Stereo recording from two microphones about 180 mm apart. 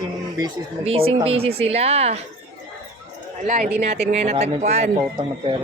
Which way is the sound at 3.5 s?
45° right (ahead or behind).